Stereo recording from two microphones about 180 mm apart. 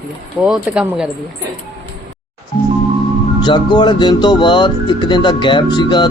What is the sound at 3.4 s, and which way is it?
Speech, 25° left (ahead or behind).